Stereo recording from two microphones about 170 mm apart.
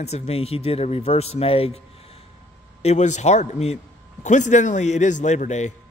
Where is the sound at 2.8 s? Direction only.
45° left (ahead or behind).